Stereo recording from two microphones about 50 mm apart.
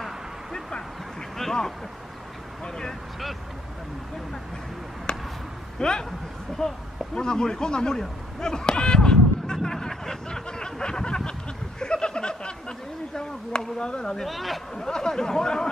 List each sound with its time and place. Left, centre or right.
0.0 s a sound: centre
2.6 s speech: centre
5.1 s a sound: centre
5.8 s speech: centre
14.2 s speech: centre
14.9 s speech: centre